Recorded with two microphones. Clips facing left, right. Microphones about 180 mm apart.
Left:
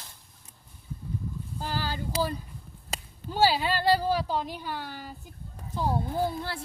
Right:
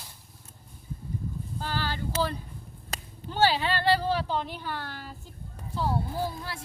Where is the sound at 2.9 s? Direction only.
10° left (ahead or behind).